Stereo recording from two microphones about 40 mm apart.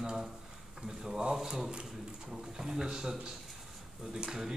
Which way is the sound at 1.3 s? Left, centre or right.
Centre.